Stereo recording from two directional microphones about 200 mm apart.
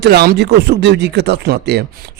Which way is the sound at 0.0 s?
55° right (ahead or behind).